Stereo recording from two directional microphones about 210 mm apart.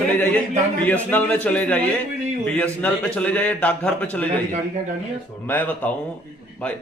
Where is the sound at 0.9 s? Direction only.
10° left (ahead or behind).